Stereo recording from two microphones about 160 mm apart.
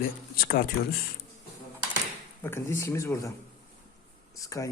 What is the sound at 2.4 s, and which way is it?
Speech, 15° left (ahead or behind).